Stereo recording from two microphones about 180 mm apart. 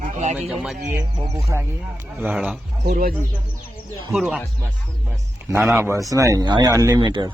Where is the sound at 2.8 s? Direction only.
55° right (ahead or behind).